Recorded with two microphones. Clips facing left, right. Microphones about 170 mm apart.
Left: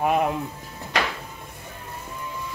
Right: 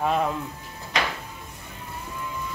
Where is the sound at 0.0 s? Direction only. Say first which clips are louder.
Left 2 dB; 15° left (ahead or behind).